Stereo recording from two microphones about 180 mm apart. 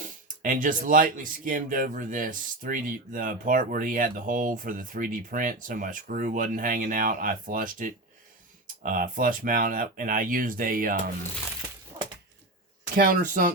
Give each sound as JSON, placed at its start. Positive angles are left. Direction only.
{"t": 0.0, "sound": "speech", "side_deg": -50}
{"t": 13.0, "sound": "speech", "side_deg": -50}